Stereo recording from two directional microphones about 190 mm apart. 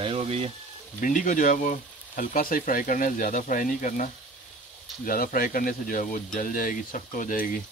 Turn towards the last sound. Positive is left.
turn(degrees=45)  # may be behind; listen again after turning